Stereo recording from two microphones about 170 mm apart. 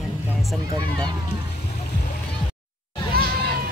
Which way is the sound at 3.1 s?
65° right (ahead or behind).